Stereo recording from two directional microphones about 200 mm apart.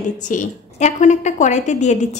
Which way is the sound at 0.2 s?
40° left (ahead or behind).